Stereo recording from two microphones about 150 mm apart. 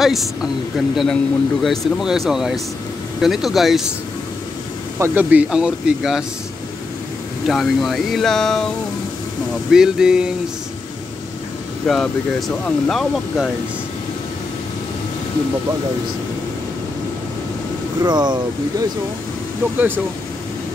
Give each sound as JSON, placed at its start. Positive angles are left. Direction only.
{"t": 0.0, "sound": "speech", "side_deg": 0}
{"t": 4.9, "sound": "speech", "side_deg": -15}
{"t": 7.4, "sound": "speech", "side_deg": 0}
{"t": 9.7, "sound": "speech", "side_deg": -5}
{"t": 11.8, "sound": "speech", "side_deg": 0}
{"t": 18.0, "sound": "speech", "side_deg": -30}